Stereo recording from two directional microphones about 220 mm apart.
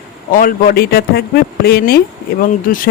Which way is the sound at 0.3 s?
40° left (ahead or behind).